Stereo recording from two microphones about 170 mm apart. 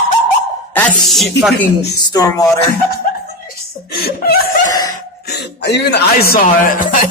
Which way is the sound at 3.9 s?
65° left (ahead or behind).